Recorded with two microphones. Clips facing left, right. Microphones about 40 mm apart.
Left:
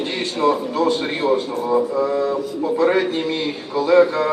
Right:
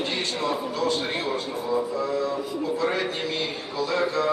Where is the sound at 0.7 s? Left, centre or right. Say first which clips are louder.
Left 6 dB; centre.